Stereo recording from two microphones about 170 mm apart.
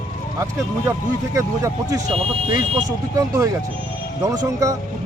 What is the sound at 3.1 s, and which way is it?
Speech, 20° right (ahead or behind).